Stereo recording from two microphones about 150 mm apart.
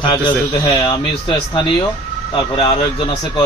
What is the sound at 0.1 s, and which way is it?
A man's voice, 30° left (ahead or behind).